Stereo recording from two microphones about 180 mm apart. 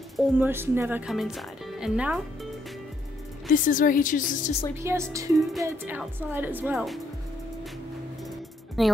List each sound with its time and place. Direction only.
0.4 s speech: 10° right (ahead or behind)
3.4 s a woman's voice: 50° left (ahead or behind)
4.7 s speech: 15° right (ahead or behind)
8.8 s a woman's voice: centre (ahead or behind)